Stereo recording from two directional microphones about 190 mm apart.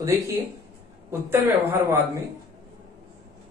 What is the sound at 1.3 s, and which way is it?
Speech, 10° right (ahead or behind).